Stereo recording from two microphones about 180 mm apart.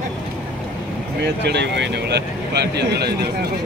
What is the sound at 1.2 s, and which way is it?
Speech, 70° right (ahead or behind).